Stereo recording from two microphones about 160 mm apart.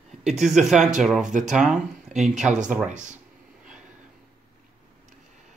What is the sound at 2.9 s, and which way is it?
Speech, 50° right (ahead or behind).